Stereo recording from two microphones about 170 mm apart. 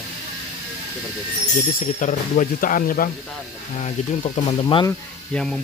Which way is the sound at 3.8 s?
40° left (ahead or behind).